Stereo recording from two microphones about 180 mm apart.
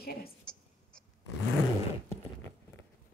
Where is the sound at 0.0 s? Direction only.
60° left (ahead or behind).